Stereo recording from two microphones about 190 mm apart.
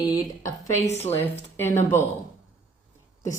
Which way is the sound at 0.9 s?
35° left (ahead or behind).